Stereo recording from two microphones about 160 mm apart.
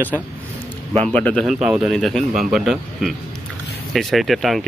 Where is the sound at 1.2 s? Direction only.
10° left (ahead or behind).